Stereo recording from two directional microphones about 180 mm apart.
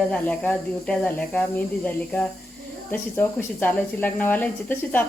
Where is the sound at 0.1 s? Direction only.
10° left (ahead or behind).